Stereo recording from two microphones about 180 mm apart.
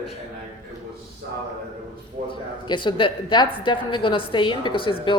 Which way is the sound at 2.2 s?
25° left (ahead or behind).